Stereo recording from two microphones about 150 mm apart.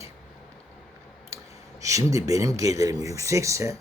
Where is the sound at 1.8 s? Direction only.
20° right (ahead or behind).